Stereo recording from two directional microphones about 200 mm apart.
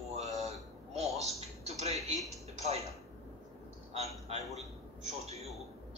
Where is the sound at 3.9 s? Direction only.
30° right (ahead or behind).